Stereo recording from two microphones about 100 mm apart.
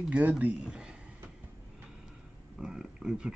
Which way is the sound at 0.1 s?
15° right (ahead or behind).